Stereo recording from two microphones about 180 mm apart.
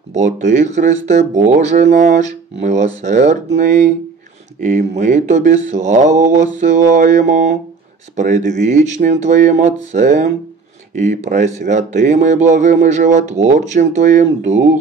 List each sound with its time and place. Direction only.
0.1 s mantra: 40° right (ahead or behind)
8.2 s speech: 40° right (ahead or behind)